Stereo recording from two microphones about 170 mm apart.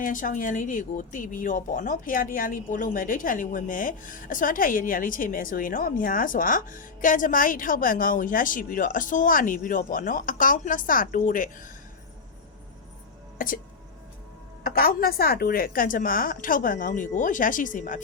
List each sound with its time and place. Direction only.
0.0 s speech: 50° left (ahead or behind)
13.4 s speech: 55° left (ahead or behind)
14.6 s speech: 60° left (ahead or behind)